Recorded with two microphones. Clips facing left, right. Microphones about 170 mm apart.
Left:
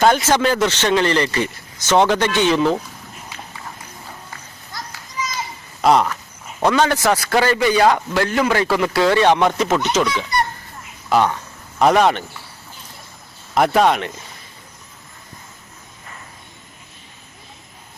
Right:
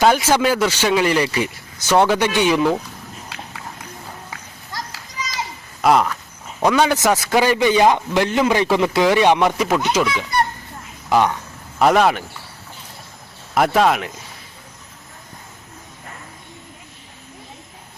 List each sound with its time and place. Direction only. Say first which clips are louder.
0.0 s a man's voice: even; 10° right (ahead or behind)
3.3 s walk: right 1 dB; 80° right
4.3 s children playing: right 2 dB; 80° right
5.8 s speech: left 1 dB; centre (ahead or behind)
6.7 s a man's voice: right 1 dB; 15° right (ahead or behind)
11.8 s speech: even; centre (ahead or behind)
13.5 s speech: left 1 dB; centre (ahead or behind)